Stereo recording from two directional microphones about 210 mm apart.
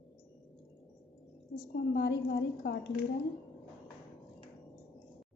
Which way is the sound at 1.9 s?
50° left (ahead or behind).